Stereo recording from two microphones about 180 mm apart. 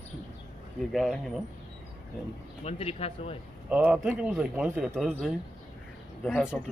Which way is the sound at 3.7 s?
10° right (ahead or behind).